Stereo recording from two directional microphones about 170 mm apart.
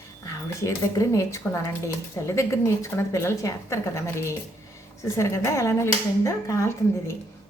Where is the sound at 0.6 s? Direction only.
20° left (ahead or behind).